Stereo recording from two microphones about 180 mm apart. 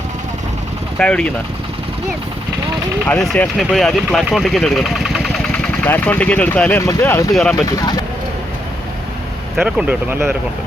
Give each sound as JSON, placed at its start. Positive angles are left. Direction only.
{"t": 0.9, "sound": "speech", "side_deg": 5}
{"t": 3.1, "sound": "speech", "side_deg": 5}
{"t": 9.6, "sound": "speech", "side_deg": -5}